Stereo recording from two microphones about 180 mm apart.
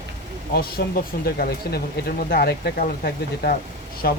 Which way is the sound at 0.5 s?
60° left (ahead or behind).